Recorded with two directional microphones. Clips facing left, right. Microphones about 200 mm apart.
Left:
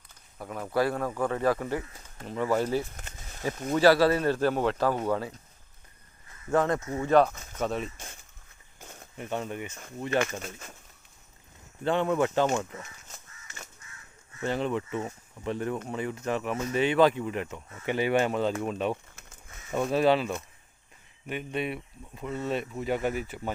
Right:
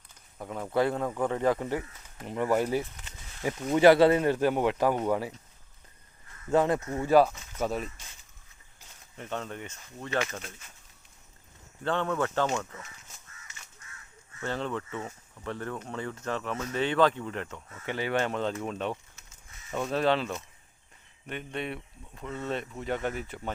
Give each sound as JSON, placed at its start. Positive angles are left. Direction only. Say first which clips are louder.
{"t": 0.3, "sound": "a man's voice", "louder": "even", "side_deg": -15}
{"t": 2.9, "sound": "a sound", "louder": "left 4 dB", "side_deg": 45}
{"t": 3.8, "sound": "speech", "louder": "right 2 dB", "side_deg": -20}
{"t": 6.5, "sound": "speech", "louder": "right 1 dB", "side_deg": -15}
{"t": 7.0, "sound": "speech", "louder": "even", "side_deg": -5}
{"t": 7.9, "sound": "a sound", "louder": "left 7 dB", "side_deg": 50}
{"t": 9.1, "sound": "speech", "louder": "left 3 dB", "side_deg": 10}
{"t": 11.8, "sound": "speech", "louder": "left 3 dB", "side_deg": 15}
{"t": 14.4, "sound": "speech", "louder": "left 4 dB", "side_deg": 15}